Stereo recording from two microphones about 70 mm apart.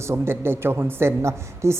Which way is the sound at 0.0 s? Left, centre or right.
Right.